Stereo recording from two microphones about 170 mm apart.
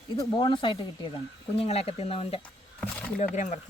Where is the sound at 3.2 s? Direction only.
45° left (ahead or behind).